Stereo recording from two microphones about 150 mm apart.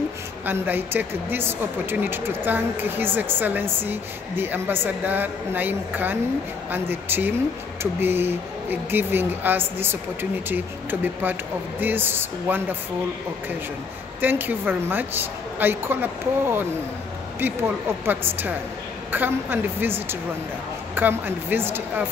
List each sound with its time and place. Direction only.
0.5 s speech: 15° right (ahead or behind)
14.2 s speech: 15° right (ahead or behind)